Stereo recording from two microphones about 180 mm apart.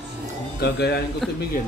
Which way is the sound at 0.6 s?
65° left (ahead or behind).